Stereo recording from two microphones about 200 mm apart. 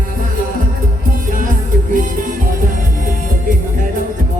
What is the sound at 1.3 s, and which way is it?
Music, 45° right (ahead or behind).